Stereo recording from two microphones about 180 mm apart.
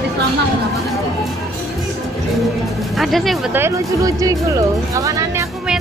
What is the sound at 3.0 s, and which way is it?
Speech, centre (ahead or behind).